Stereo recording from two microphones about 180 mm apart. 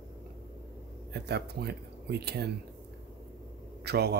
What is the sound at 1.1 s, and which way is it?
Speech, 65° right (ahead or behind).